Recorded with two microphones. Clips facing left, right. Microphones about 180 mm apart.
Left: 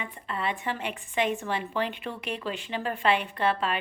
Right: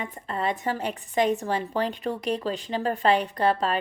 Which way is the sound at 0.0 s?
40° right (ahead or behind).